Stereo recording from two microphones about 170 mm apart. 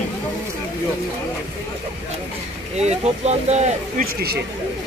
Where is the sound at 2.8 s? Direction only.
40° right (ahead or behind).